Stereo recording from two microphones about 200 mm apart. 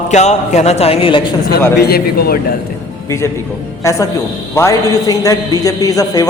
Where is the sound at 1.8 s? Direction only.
50° left (ahead or behind).